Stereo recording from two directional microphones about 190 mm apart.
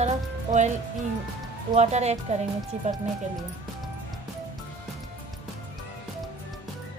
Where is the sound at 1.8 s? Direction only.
35° right (ahead or behind).